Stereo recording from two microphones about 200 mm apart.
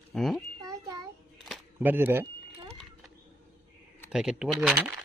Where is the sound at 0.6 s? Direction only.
15° right (ahead or behind).